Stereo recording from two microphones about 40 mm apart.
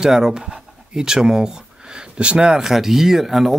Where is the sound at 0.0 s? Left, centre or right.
Centre.